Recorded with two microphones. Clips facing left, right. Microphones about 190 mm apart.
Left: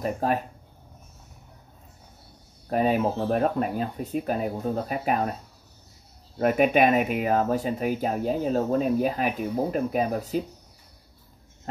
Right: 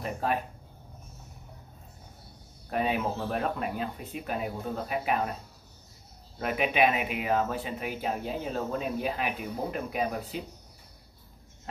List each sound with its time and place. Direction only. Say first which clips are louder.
0.0 s speech: left 5 dB; 40° left (ahead or behind)
2.7 s speech: left 6 dB; 40° left (ahead or behind)
6.3 s speech: left 8 dB; 45° left (ahead or behind)